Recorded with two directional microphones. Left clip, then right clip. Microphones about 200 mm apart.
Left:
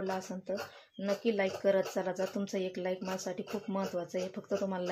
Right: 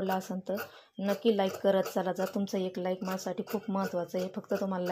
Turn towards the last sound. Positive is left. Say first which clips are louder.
# right 2 dB
turn(degrees=-15)  # may be behind; listen again after turning